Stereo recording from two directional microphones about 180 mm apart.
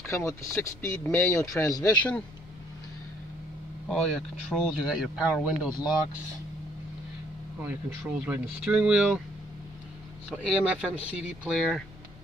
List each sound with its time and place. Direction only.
0.0 s speech: 15° left (ahead or behind)
3.9 s speech: 5° left (ahead or behind)
7.6 s speech: 10° right (ahead or behind)
10.3 s speech: 5° right (ahead or behind)